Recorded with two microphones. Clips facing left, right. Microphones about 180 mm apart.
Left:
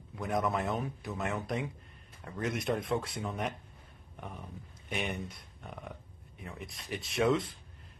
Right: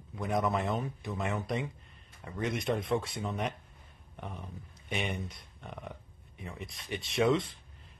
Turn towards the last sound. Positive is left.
turn(degrees=0)  # may be behind; listen again after turning